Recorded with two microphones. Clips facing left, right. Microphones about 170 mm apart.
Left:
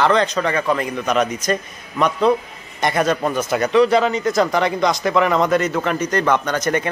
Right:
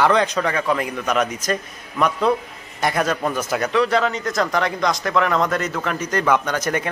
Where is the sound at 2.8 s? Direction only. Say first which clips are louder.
Left 2 dB; centre (ahead or behind).